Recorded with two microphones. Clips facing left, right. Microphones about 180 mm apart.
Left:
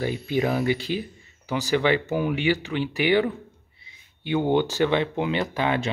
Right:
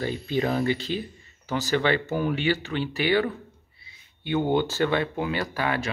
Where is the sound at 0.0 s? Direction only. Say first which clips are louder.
Left 2 dB; 15° left (ahead or behind).